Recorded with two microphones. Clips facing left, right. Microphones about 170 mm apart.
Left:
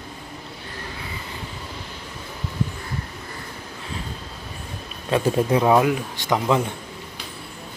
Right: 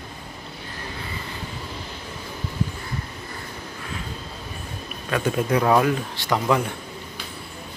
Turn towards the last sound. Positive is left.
turn(degrees=20)  # may be behind; listen again after turning